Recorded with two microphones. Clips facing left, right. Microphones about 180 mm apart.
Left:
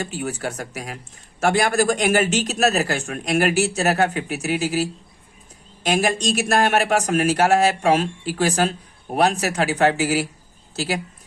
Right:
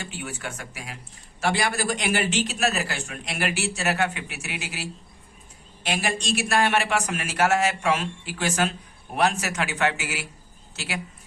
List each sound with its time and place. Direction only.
0.0 s a man's voice: 40° left (ahead or behind)